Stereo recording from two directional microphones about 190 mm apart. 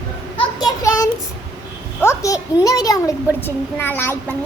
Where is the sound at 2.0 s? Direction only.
15° left (ahead or behind).